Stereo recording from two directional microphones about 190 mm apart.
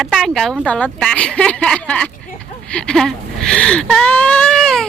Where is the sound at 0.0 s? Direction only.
Centre (ahead or behind).